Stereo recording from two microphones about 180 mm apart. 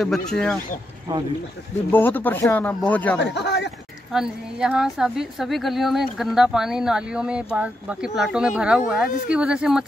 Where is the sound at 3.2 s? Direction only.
70° left (ahead or behind).